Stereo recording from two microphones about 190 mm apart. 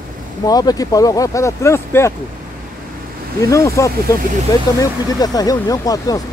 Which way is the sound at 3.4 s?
15° left (ahead or behind).